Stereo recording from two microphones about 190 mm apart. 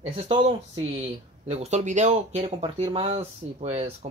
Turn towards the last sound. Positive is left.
turn(degrees=-30)  # may be behind; listen again after turning